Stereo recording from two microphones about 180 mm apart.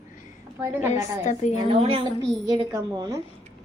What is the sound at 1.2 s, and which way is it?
Speech, 40° left (ahead or behind).